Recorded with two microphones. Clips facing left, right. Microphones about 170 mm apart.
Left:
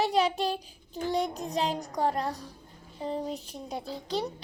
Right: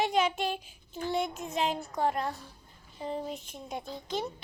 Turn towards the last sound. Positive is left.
turn(degrees=35)  # may be behind; listen again after turning